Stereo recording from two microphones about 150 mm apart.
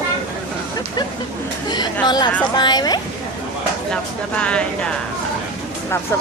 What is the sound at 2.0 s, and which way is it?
Speech, 30° left (ahead or behind).